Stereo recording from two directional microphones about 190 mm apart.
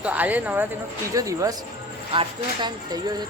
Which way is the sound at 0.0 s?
10° right (ahead or behind).